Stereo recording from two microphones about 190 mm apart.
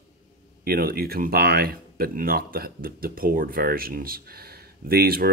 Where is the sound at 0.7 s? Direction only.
50° right (ahead or behind).